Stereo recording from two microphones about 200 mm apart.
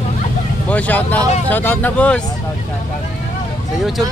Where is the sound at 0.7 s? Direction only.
10° left (ahead or behind).